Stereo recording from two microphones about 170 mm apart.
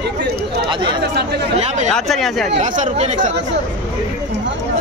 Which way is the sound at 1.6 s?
40° right (ahead or behind).